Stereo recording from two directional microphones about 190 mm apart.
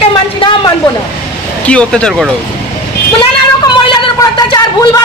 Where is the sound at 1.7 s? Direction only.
5° left (ahead or behind).